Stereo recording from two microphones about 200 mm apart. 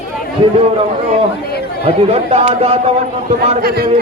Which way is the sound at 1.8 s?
30° right (ahead or behind).